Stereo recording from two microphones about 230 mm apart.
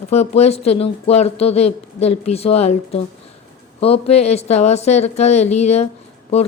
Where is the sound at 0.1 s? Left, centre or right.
Left.